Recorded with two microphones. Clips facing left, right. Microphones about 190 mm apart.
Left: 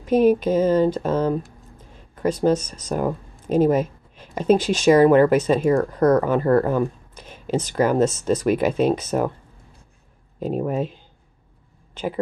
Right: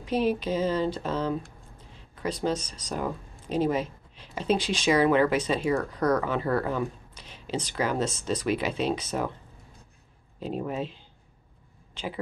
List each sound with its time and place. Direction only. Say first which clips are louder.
0.0 s speech: left 9 dB; 50° left (ahead or behind)
10.4 s speech: left 7 dB; 50° left (ahead or behind)